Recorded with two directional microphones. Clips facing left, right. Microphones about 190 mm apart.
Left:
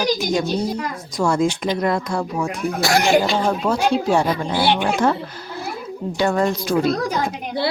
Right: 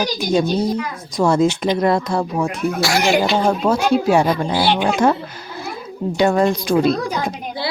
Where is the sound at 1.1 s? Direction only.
20° right (ahead or behind).